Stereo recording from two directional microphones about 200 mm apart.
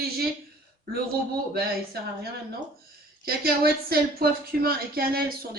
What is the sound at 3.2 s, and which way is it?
Speech, 50° right (ahead or behind).